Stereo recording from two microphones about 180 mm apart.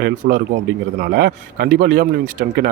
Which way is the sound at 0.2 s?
55° right (ahead or behind).